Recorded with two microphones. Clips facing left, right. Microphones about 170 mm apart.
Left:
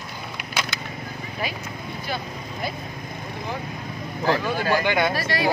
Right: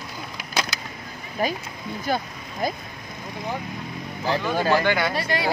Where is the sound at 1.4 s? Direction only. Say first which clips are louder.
Right 6 dB; 45° right (ahead or behind).